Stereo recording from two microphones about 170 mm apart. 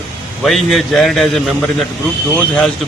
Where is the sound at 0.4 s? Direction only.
Centre (ahead or behind).